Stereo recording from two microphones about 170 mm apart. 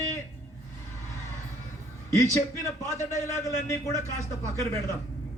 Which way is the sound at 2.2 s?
15° left (ahead or behind).